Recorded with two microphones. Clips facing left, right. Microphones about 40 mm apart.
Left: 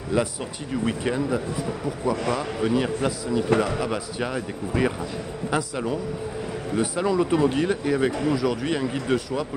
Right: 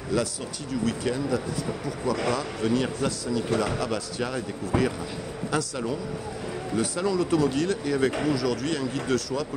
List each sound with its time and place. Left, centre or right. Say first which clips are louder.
0.1 s a man's voice: left 3 dB; left